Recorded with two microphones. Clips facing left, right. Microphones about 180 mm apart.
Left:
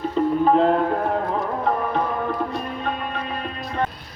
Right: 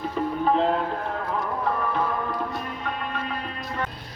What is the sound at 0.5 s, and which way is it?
Speech, 45° left (ahead or behind).